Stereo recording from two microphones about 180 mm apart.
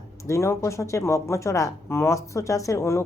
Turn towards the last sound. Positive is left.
turn(degrees=15)  # may be behind; listen again after turning